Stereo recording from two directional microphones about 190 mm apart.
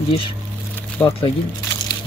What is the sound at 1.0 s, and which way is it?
Speech, 10° left (ahead or behind).